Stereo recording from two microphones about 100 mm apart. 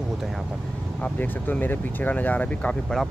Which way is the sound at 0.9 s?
15° left (ahead or behind).